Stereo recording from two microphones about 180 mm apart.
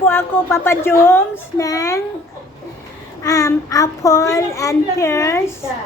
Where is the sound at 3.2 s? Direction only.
20° left (ahead or behind).